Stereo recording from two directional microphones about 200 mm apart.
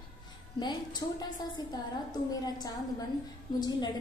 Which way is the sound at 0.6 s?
20° left (ahead or behind).